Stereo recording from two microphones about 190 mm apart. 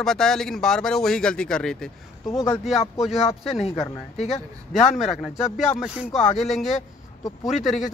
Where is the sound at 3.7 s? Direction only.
20° left (ahead or behind).